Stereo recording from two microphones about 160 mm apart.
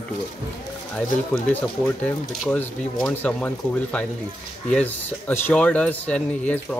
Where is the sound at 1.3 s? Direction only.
10° left (ahead or behind).